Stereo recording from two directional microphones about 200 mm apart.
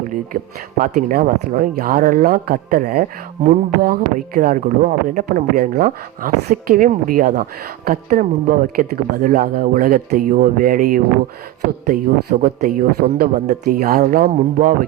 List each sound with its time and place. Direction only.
0.8 s speech: 45° right (ahead or behind)